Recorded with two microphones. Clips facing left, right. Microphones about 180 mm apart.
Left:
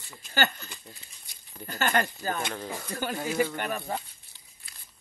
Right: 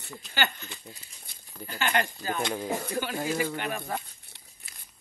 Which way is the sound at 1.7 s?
45° left (ahead or behind).